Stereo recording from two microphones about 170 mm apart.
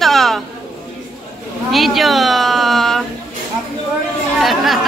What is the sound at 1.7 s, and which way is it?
A woman's voice, centre (ahead or behind).